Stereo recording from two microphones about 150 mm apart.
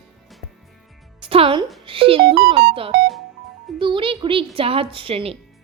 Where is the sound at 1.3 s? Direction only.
40° right (ahead or behind).